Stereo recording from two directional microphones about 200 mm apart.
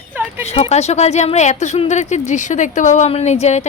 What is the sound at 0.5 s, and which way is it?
A woman's voice, 30° left (ahead or behind).